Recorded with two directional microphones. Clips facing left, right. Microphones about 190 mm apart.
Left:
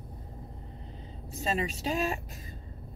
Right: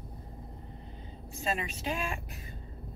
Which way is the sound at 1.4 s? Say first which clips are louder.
Left 3 dB; 40° left (ahead or behind).